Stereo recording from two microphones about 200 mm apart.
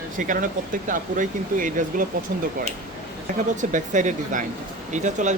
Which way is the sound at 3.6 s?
40° right (ahead or behind).